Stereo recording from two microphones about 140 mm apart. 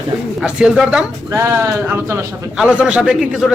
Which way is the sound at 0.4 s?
5° right (ahead or behind).